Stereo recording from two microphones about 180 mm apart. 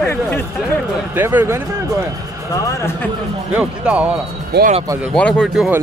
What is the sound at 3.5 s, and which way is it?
Speech, 5° right (ahead or behind).